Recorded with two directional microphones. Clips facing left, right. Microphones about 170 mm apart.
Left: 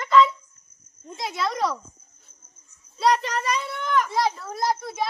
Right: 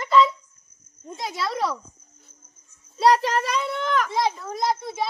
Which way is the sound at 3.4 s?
90° right.